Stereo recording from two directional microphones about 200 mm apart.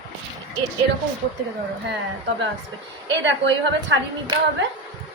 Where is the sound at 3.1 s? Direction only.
65° right (ahead or behind).